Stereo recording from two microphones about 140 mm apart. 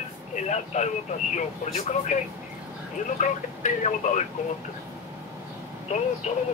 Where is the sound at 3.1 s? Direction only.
60° left (ahead or behind).